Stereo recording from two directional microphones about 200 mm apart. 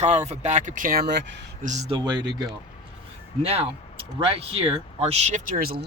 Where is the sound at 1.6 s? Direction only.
35° right (ahead or behind).